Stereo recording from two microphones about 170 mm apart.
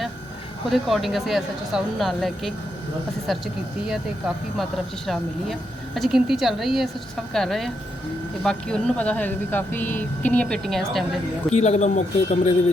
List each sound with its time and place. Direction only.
0.7 s speech: centre (ahead or behind)
5.0 s speech: centre (ahead or behind)
11.5 s speech: 40° left (ahead or behind)